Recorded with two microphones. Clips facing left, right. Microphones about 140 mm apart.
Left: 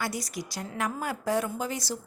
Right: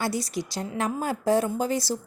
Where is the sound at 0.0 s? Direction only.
30° right (ahead or behind).